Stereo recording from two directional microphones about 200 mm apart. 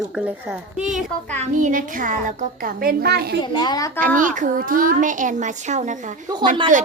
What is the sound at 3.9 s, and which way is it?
A child's voice, 40° right (ahead or behind).